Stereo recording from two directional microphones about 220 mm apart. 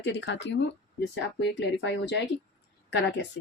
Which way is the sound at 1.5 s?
50° left (ahead or behind).